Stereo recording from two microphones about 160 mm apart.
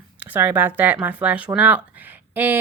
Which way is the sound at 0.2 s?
10° right (ahead or behind).